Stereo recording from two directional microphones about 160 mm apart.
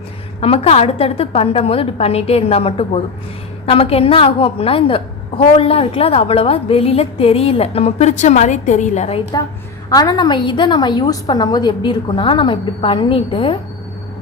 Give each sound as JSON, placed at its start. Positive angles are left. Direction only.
{"t": 0.3, "sound": "a woman's voice", "side_deg": 40}
{"t": 9.9, "sound": "a woman's voice", "side_deg": 25}